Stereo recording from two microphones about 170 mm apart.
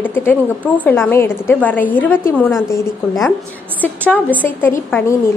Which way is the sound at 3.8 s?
10° left (ahead or behind).